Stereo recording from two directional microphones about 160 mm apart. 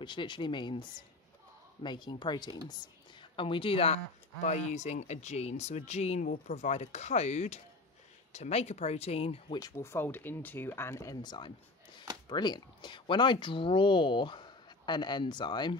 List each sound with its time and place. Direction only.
0.0 s speech: 30° left (ahead or behind)
9.6 s speech: 20° left (ahead or behind)